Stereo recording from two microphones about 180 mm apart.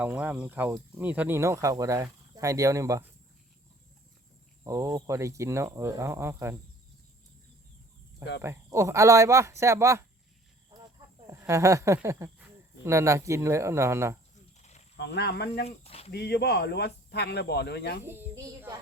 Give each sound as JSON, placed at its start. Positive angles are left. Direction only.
{"t": 0.0, "sound": "speech", "side_deg": -5}
{"t": 4.6, "sound": "speech", "side_deg": -20}
{"t": 8.4, "sound": "speech", "side_deg": -15}
{"t": 11.3, "sound": "speech", "side_deg": -15}
{"t": 14.6, "sound": "a sound", "side_deg": 40}
{"t": 14.9, "sound": "speech", "side_deg": 70}
{"t": 15.6, "sound": "speech", "side_deg": 35}
{"t": 16.1, "sound": "speech", "side_deg": 65}
{"t": 18.0, "sound": "a child's voice", "side_deg": -10}